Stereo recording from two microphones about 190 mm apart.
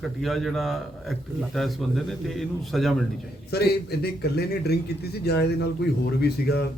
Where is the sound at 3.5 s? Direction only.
55° left (ahead or behind).